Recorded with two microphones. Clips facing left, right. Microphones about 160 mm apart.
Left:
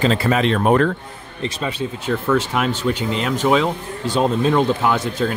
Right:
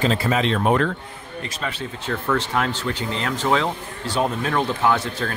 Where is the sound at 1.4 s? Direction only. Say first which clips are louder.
Left 7 dB; 20° left (ahead or behind).